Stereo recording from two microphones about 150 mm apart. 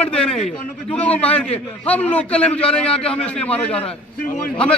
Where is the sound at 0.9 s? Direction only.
10° left (ahead or behind).